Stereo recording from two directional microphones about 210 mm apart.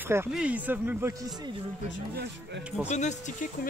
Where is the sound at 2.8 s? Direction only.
35° left (ahead or behind).